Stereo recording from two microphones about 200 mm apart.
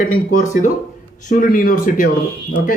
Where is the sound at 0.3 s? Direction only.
40° left (ahead or behind).